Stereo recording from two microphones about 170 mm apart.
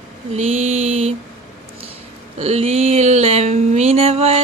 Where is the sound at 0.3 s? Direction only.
40° right (ahead or behind).